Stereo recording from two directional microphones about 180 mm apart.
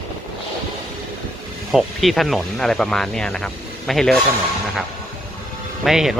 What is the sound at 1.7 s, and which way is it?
Speech, centre (ahead or behind).